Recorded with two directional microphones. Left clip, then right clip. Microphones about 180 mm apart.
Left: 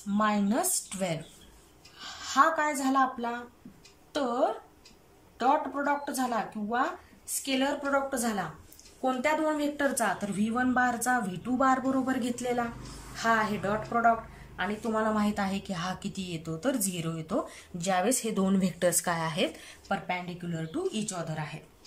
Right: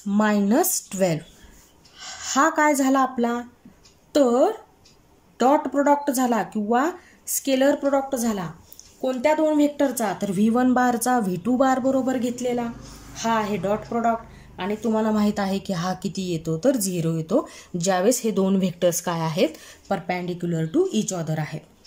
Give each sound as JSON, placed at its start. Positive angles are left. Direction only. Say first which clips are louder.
{"t": 0.2, "sound": "a woman's voice", "louder": "right 7 dB", "side_deg": -35}